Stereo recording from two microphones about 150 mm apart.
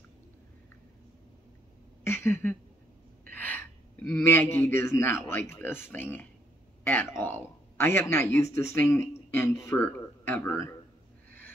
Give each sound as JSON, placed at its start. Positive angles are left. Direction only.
{"t": 2.0, "sound": "a sound", "side_deg": 15}
{"t": 3.3, "sound": "gasp", "side_deg": 10}
{"t": 4.3, "sound": "a man's voice", "side_deg": 15}